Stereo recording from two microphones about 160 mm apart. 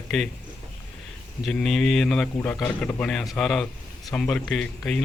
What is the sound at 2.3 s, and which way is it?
Speech, 20° left (ahead or behind).